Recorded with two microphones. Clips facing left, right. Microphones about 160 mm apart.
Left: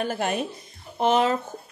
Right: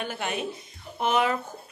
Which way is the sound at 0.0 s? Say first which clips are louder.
Left 5 dB; 40° left (ahead or behind).